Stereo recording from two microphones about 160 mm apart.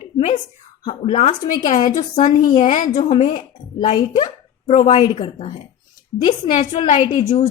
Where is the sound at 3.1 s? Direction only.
40° left (ahead or behind).